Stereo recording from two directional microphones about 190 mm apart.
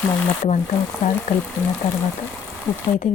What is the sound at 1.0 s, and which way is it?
Speech, 40° left (ahead or behind).